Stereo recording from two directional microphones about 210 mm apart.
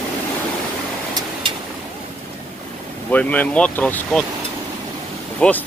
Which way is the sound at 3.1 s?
5° left (ahead or behind).